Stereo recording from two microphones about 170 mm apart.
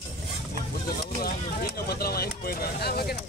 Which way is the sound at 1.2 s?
65° left (ahead or behind).